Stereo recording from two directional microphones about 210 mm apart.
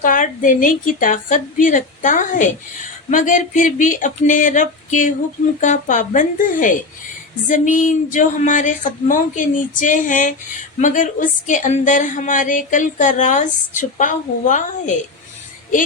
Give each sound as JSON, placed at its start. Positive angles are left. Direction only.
{"t": 0.0, "sound": "speech", "side_deg": 40}